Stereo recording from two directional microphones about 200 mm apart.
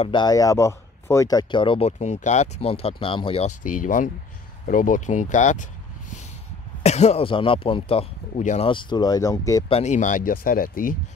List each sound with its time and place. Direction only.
0.0 s speech: 20° left (ahead or behind)
9.7 s speech: 30° left (ahead or behind)